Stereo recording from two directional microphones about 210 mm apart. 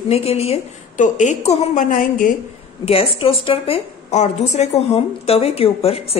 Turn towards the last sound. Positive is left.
turn(degrees=30)  # may be behind; listen again after turning